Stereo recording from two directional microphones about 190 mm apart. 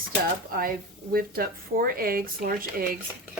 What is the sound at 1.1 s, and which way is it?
Speech, 50° right (ahead or behind).